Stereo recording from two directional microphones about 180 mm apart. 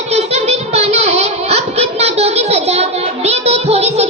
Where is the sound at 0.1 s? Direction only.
35° right (ahead or behind).